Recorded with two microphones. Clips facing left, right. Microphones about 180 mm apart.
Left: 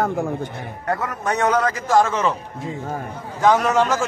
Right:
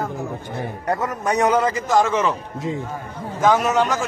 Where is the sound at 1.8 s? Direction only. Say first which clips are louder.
Even; centre (ahead or behind).